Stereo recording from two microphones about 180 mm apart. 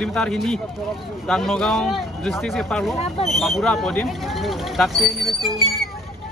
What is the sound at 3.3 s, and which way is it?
A man's voice, centre (ahead or behind).